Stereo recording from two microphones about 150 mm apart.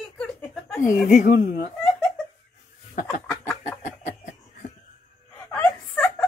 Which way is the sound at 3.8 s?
55° left (ahead or behind).